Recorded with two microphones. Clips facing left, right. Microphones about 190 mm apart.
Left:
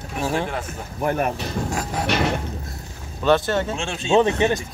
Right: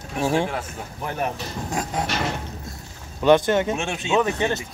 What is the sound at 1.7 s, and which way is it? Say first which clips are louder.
Speech: right 4 dB; 20° right (ahead or behind).